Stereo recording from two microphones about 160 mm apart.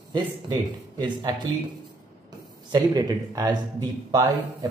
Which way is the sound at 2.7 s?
25° right (ahead or behind).